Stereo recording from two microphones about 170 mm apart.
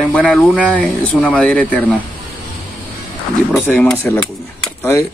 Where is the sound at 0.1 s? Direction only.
5° left (ahead or behind).